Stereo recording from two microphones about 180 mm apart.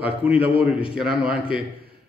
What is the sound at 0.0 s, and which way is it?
A man's voice, 5° right (ahead or behind).